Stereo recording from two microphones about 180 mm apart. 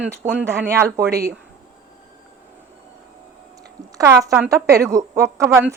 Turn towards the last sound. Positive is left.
turn(degrees=-15)  # may be behind; listen again after turning